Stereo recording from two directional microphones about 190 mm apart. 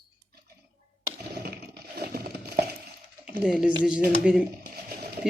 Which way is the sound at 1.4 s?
55° right (ahead or behind).